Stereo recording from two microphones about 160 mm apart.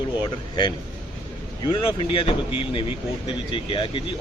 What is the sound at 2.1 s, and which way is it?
Speech, 35° left (ahead or behind).